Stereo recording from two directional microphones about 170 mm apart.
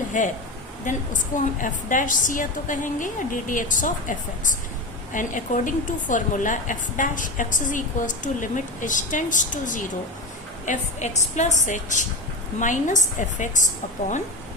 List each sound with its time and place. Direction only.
0.1 s a woman's voice: 50° left (ahead or behind)